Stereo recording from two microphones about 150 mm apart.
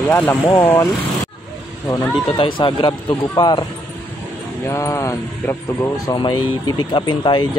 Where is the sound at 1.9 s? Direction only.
35° left (ahead or behind).